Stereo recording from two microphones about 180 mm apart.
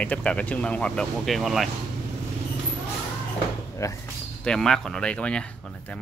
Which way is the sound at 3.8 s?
15° left (ahead or behind).